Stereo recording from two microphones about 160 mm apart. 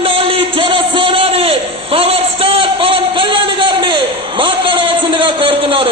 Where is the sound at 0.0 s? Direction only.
35° right (ahead or behind).